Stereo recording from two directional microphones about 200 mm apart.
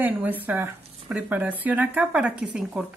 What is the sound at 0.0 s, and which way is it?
Speech, 10° right (ahead or behind).